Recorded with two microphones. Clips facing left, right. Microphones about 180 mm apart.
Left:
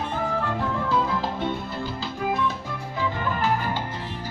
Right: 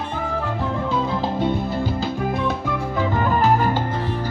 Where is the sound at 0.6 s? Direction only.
25° right (ahead or behind).